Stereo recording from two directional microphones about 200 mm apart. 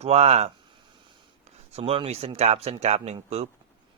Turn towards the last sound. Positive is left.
turn(degrees=-30)  # may be behind; listen again after turning